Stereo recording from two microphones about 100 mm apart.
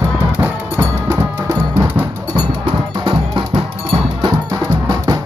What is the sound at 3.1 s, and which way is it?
Music, 60° right (ahead or behind).